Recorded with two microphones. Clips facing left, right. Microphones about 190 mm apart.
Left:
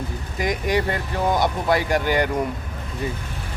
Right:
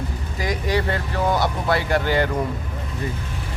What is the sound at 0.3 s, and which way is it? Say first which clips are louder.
Speech: left 1 dB; 20° left (ahead or behind).